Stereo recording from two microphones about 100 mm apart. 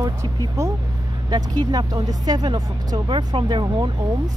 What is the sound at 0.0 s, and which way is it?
Speech, 35° right (ahead or behind).